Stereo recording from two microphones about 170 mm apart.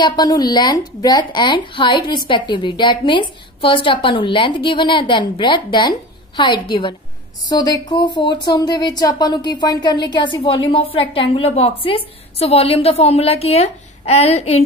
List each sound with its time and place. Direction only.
0.0 s a woman's voice: 25° left (ahead or behind)